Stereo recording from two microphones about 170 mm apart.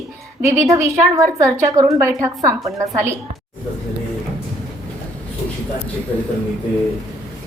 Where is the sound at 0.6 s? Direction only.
15° right (ahead or behind).